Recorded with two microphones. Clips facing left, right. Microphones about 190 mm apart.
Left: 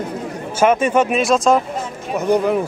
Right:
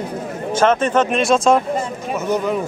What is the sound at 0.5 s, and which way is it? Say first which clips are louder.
A man's voice: left 1 dB; 10° left (ahead or behind).